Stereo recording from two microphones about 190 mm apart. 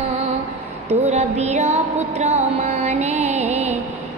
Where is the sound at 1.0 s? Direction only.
35° right (ahead or behind).